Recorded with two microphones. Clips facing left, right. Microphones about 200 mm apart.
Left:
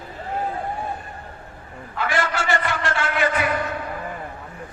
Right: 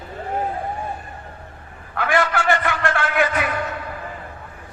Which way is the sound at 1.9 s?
55° right (ahead or behind).